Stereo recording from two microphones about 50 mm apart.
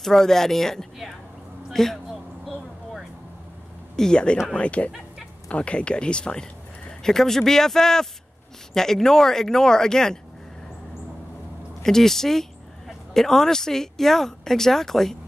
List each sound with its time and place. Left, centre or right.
0.0 s a man's voice: centre
3.9 s speech: centre
11.8 s speech: centre